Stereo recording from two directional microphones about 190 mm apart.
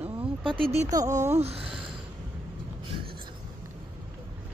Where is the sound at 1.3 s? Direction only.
35° right (ahead or behind).